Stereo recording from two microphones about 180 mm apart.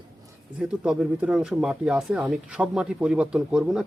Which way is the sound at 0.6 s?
5° right (ahead or behind).